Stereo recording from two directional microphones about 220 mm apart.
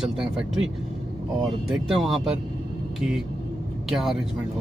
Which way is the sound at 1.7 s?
Centre (ahead or behind).